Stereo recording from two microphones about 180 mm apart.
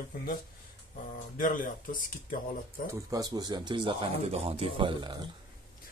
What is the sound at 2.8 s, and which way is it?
Speech, 15° right (ahead or behind).